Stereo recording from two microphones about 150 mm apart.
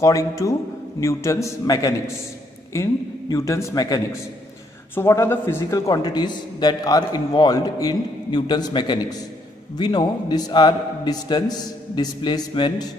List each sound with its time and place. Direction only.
0.0 s a man's voice: 20° left (ahead or behind)